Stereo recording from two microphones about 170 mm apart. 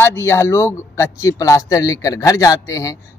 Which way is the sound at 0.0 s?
15° left (ahead or behind).